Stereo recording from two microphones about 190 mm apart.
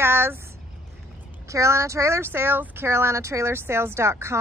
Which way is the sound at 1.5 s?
15° right (ahead or behind).